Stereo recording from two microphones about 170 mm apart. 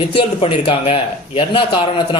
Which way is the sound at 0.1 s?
35° left (ahead or behind).